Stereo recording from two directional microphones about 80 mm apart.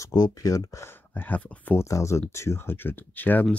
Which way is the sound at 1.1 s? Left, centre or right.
Left.